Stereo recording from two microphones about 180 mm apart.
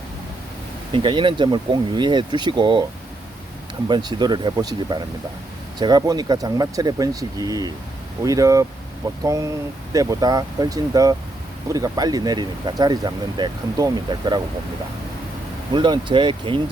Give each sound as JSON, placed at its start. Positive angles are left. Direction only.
{"t": 0.9, "sound": "speech", "side_deg": -30}
{"t": 3.8, "sound": "speech", "side_deg": -25}
{"t": 15.7, "sound": "speech", "side_deg": -25}